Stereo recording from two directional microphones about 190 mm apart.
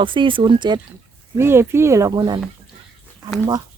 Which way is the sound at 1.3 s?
15° right (ahead or behind).